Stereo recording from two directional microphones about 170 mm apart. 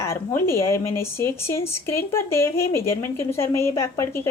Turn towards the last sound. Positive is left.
turn(degrees=15)  # may be behind; listen again after turning